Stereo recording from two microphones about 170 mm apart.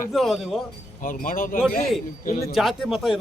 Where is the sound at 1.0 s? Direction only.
55° left (ahead or behind).